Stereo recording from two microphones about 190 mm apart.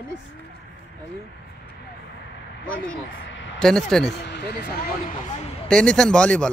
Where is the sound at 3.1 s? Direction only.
75° left (ahead or behind).